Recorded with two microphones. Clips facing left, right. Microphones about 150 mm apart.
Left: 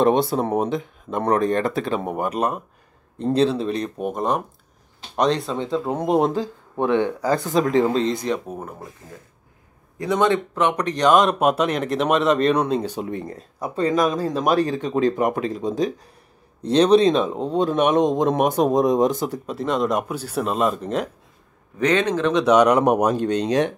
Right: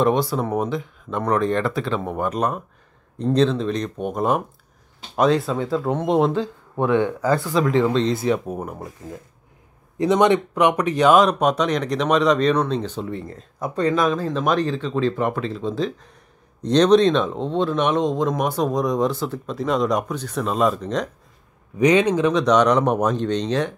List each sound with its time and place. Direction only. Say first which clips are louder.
0.0 s speech: left 2 dB; 25° left (ahead or behind); by 5.6 s 5° right (ahead or behind)
5.9 s speech: even; 10° left (ahead or behind)
6.2 s speech: right 1 dB; 35° left (ahead or behind)
7.4 s speech: even; 45° left (ahead or behind)
8.3 s speech: right 3 dB; 10° right (ahead or behind)
9.9 s speech: right 3 dB; 20° right (ahead or behind); by 13.4 s 15° left (ahead or behind)
13.6 s speech: even; 35° left (ahead or behind)
14.4 s speech: left 2 dB; 10° left (ahead or behind)
21.7 s speech: right 3 dB; 10° right (ahead or behind)
22.3 s speech: left 4 dB; 5° left (ahead or behind)